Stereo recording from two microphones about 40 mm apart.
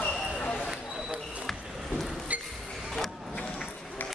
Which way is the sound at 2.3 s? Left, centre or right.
Right.